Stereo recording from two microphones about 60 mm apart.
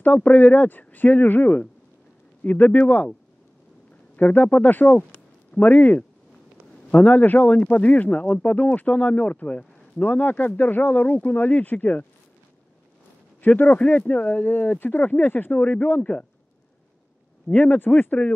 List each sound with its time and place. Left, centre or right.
0.0 s speech: left
4.2 s speech: left
13.4 s speech: left
17.6 s speech: left